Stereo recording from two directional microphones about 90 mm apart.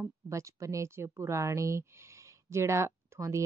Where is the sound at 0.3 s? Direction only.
35° right (ahead or behind).